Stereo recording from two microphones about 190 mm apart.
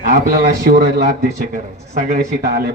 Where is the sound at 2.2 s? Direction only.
55° right (ahead or behind).